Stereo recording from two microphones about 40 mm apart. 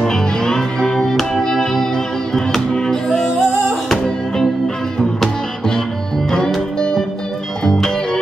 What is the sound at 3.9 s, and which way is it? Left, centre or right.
Music, centre.